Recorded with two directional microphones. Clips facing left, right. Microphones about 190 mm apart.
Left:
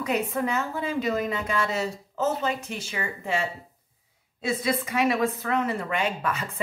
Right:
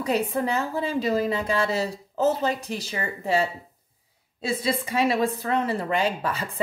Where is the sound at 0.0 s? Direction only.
30° right (ahead or behind).